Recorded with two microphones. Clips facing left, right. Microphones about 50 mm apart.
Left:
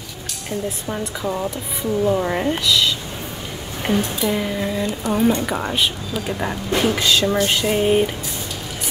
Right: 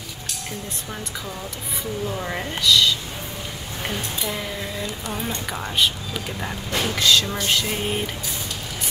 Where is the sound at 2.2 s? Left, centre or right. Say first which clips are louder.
Left 6 dB; centre.